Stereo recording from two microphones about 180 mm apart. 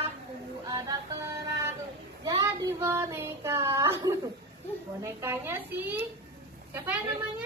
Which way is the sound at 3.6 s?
15° right (ahead or behind).